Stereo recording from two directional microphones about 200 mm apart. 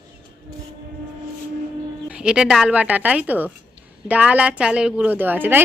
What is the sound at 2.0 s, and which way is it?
A woman's voice, 5° right (ahead or behind).